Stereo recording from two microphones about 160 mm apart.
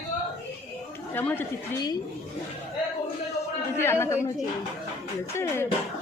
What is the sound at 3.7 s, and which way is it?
Speech, 15° left (ahead or behind).